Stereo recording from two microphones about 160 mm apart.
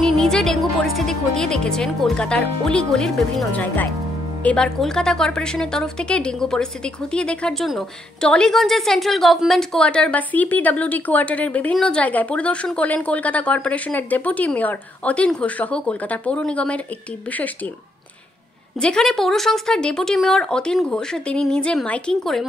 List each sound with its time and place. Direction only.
0.0 s speech: 5° left (ahead or behind)
18.8 s speech: 5° left (ahead or behind)